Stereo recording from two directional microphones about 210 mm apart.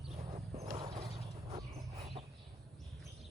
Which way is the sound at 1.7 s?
30° right (ahead or behind).